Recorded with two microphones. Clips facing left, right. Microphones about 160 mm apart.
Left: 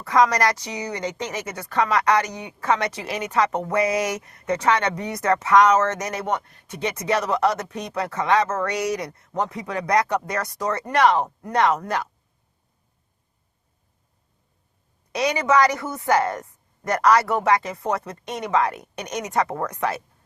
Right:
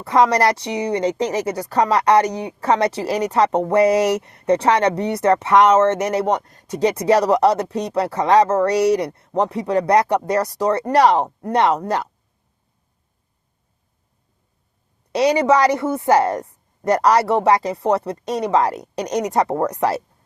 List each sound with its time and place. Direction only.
0.0 s speech: 30° right (ahead or behind)
15.1 s speech: 30° right (ahead or behind)